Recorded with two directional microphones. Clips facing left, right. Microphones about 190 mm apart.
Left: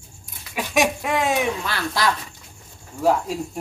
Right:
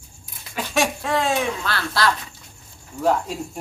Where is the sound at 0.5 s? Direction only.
15° left (ahead or behind).